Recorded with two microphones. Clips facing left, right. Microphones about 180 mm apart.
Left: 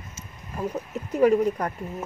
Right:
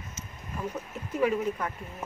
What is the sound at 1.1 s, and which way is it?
Speech, 40° left (ahead or behind).